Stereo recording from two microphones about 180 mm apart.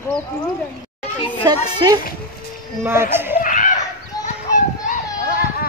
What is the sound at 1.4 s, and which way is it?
Speech, 25° right (ahead or behind).